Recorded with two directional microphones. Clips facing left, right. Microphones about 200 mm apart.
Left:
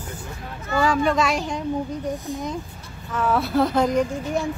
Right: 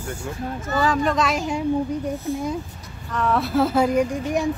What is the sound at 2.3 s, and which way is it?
Speech, 15° left (ahead or behind).